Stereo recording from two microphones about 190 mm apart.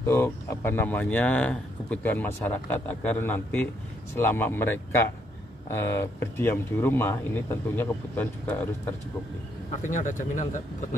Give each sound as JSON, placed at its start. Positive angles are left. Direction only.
{"t": 0.0, "sound": "speech", "side_deg": 15}
{"t": 9.8, "sound": "speech", "side_deg": 40}